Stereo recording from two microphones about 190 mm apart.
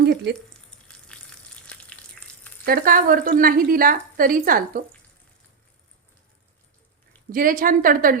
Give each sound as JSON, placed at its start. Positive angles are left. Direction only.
{"t": 0.0, "sound": "frying", "side_deg": -60}
{"t": 0.9, "sound": "frying", "side_deg": 5}
{"t": 2.6, "sound": "speech", "side_deg": -50}
{"t": 7.3, "sound": "speech", "side_deg": -45}